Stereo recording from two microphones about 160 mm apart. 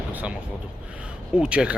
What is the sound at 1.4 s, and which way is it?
Speech, 5° right (ahead or behind).